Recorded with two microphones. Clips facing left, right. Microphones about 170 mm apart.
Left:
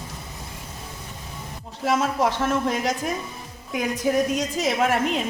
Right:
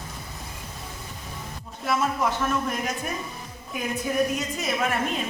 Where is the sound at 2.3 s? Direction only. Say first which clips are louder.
Left 3 dB; 90° left.